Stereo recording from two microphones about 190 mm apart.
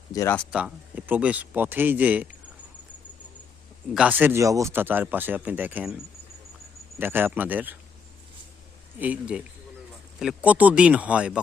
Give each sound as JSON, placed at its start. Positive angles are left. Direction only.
{"t": 0.1, "sound": "speech", "side_deg": 15}
{"t": 0.5, "sound": "speech", "side_deg": -5}
{"t": 3.9, "sound": "speech", "side_deg": -10}
{"t": 7.0, "sound": "speech", "side_deg": -10}
{"t": 9.0, "sound": "speech", "side_deg": -5}